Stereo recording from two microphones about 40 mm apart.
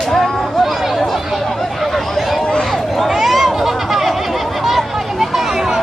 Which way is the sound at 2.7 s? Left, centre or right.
Centre.